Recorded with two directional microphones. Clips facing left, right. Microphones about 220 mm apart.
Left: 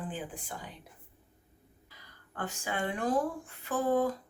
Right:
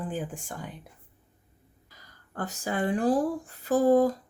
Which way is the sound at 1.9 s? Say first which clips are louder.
Right 5 dB; 40° right (ahead or behind).